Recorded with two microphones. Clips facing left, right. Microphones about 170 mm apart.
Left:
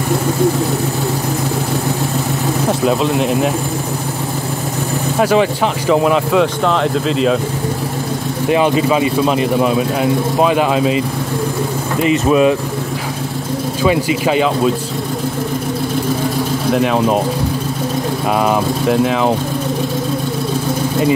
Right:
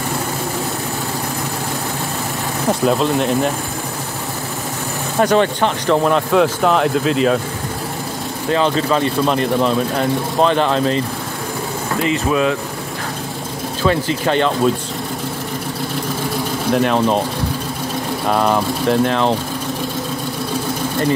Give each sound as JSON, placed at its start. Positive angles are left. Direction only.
{"t": 2.8, "sound": "speech", "side_deg": 0}
{"t": 5.2, "sound": "speech", "side_deg": 5}
{"t": 8.5, "sound": "speech", "side_deg": 15}
{"t": 12.0, "sound": "speech", "side_deg": 20}
{"t": 13.8, "sound": "speech", "side_deg": 10}
{"t": 16.7, "sound": "speech", "side_deg": 5}
{"t": 18.3, "sound": "speech", "side_deg": 5}